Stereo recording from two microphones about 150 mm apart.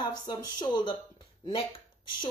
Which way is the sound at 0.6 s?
30° left (ahead or behind).